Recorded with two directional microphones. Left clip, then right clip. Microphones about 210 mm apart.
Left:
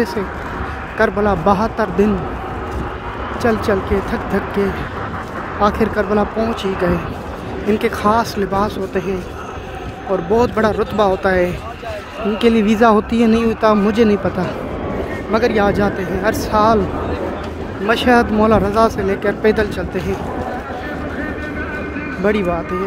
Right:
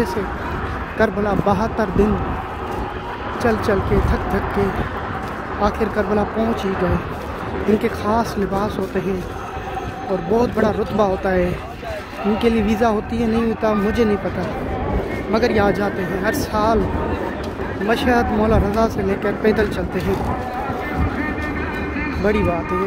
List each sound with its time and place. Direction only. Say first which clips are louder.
0.9 s speech: left 3 dB; 15° left (ahead or behind)
3.4 s speech: left 2 dB; 15° left (ahead or behind)
5.6 s speech: left 4 dB; 15° left (ahead or behind)
7.8 s speech: left 4 dB; 20° left (ahead or behind)
10.3 s speech: left 3 dB; 25° left (ahead or behind)
15.3 s speech: left 2 dB; 15° left (ahead or behind)
17.8 s speech: left 4 dB; 20° left (ahead or behind)
22.2 s speech: left 2 dB; 15° left (ahead or behind)